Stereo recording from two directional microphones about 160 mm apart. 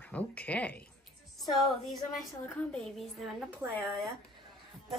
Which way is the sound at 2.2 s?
5° left (ahead or behind).